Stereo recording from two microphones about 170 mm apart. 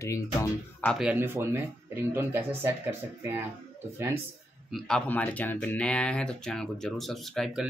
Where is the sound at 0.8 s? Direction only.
5° right (ahead or behind).